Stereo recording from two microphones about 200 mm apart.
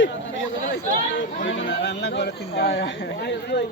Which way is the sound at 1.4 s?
65° left (ahead or behind).